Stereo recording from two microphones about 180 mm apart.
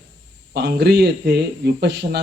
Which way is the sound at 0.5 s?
70° right (ahead or behind).